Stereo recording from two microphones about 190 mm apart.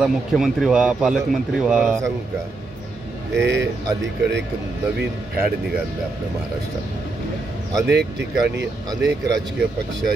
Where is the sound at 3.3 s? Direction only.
65° right (ahead or behind).